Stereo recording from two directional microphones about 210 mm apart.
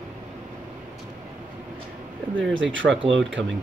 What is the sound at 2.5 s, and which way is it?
Speech, 60° right (ahead or behind).